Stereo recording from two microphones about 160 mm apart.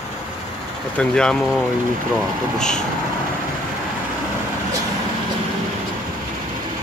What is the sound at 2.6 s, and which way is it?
Speech, 5° left (ahead or behind).